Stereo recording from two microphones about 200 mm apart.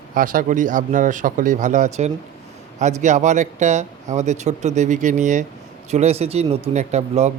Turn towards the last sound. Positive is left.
turn(degrees=-35)  # may be behind; listen again after turning